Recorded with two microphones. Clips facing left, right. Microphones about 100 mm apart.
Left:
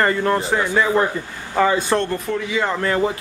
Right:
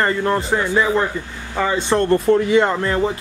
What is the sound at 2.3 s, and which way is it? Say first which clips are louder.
Speech: right 9 dB; 45° right (ahead or behind).